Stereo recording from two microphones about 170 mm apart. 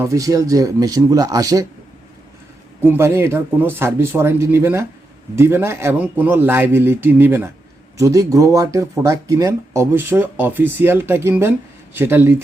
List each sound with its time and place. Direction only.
0.0 s speech: 20° right (ahead or behind)
2.9 s speech: 15° right (ahead or behind)